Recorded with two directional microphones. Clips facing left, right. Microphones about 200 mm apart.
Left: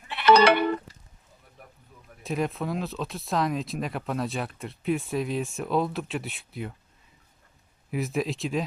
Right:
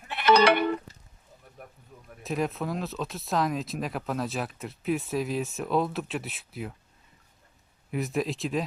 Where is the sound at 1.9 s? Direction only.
45° right (ahead or behind).